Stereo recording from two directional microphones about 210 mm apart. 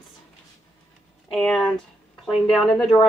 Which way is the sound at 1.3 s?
Centre (ahead or behind).